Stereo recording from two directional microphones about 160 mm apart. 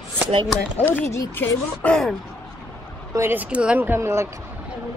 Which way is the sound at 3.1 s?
15° right (ahead or behind).